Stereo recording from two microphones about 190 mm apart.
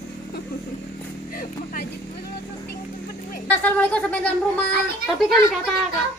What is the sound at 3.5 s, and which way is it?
Speech, 5° left (ahead or behind).